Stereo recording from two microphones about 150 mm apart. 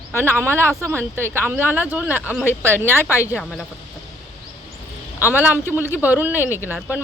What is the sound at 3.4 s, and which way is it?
Speech, centre (ahead or behind).